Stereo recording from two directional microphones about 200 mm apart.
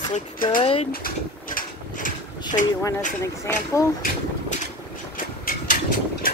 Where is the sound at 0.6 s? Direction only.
30° left (ahead or behind).